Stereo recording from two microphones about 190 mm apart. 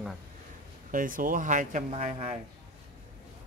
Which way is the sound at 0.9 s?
45° right (ahead or behind).